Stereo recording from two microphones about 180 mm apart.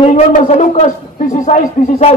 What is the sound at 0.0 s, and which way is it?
A man's voice, 45° left (ahead or behind).